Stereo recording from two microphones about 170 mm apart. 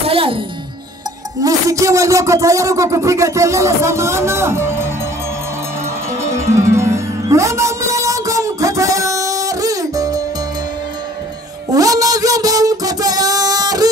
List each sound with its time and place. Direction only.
0.0 s music: 35° right (ahead or behind)
1.4 s speech: 20° right (ahead or behind)
6.2 s music: 15° right (ahead or behind)
11.7 s a sound: 20° right (ahead or behind)